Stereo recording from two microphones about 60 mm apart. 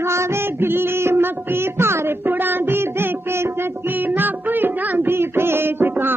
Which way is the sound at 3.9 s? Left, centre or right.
Right.